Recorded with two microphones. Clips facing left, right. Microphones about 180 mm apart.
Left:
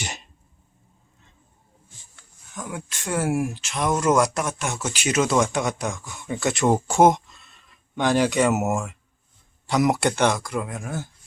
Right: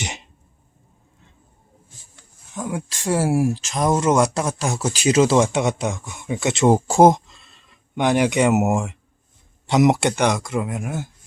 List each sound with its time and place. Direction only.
0.0 s a sound: 20° right (ahead or behind)
2.6 s speech: 30° right (ahead or behind)
3.9 s speech: 25° right (ahead or behind)
7.9 s speech: 20° right (ahead or behind)